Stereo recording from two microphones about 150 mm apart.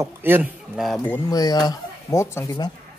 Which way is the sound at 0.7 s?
Centre (ahead or behind).